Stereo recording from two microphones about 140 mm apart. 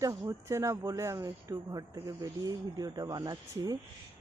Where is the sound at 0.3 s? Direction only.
20° right (ahead or behind).